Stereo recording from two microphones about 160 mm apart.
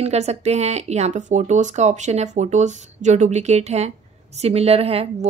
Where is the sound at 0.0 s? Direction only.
40° right (ahead or behind).